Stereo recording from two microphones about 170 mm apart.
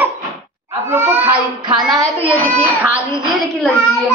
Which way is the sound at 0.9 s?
15° right (ahead or behind).